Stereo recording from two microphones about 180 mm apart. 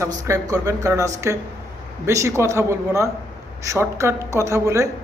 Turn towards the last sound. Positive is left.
turn(degrees=-20)  # may be behind; listen again after turning